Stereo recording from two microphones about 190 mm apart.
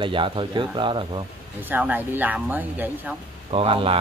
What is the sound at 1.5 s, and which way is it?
Speech, 10° right (ahead or behind).